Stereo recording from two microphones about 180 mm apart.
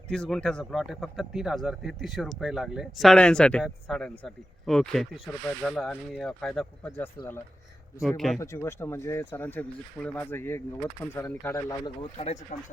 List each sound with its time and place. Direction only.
0.1 s speech: 5° left (ahead or behind)
8.4 s speech: 15° left (ahead or behind)
12.1 s speech: 40° left (ahead or behind)